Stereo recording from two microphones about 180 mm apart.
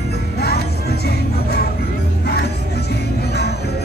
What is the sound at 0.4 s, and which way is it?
Music, 65° left (ahead or behind).